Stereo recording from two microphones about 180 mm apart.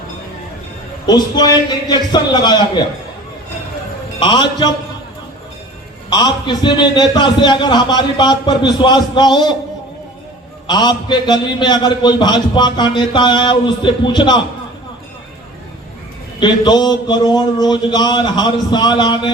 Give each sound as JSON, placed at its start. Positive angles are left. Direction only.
{"t": 1.0, "sound": "a man's voice", "side_deg": 20}
{"t": 4.2, "sound": "a man's voice", "side_deg": 25}
{"t": 6.1, "sound": "a man's voice", "side_deg": 25}
{"t": 10.7, "sound": "a man's voice", "side_deg": 25}
{"t": 16.4, "sound": "a man's voice", "side_deg": 25}